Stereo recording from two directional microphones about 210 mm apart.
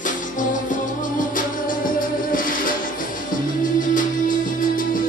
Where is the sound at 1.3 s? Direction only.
40° left (ahead or behind).